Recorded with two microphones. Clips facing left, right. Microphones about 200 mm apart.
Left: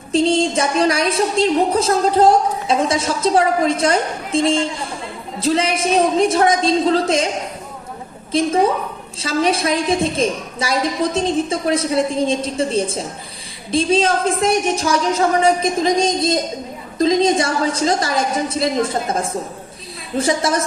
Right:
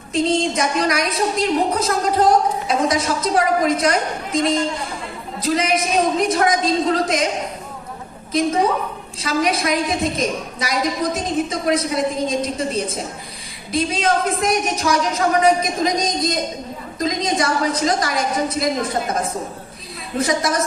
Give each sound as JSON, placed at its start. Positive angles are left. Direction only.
{"t": 0.1, "sound": "a woman's voice", "side_deg": 30}
{"t": 9.2, "sound": "a woman's voice", "side_deg": 30}
{"t": 20.1, "sound": "a woman's voice", "side_deg": 30}